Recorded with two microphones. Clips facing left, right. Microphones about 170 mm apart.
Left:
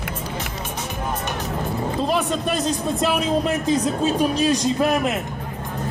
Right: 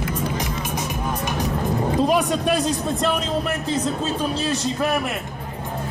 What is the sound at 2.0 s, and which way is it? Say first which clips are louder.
A man's voice: right 1 dB; 10° right (ahead or behind).